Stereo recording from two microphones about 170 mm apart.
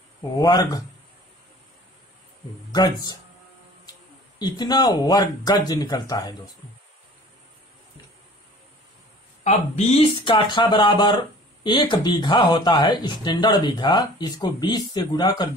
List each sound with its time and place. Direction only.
0.4 s speech: 20° left (ahead or behind)
4.4 s speech: 25° left (ahead or behind)
9.4 s speech: 40° left (ahead or behind)
10.2 s speech: 30° left (ahead or behind)